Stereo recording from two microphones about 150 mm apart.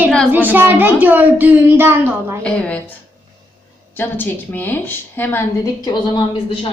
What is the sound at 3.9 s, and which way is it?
A woman's voice, 15° left (ahead or behind).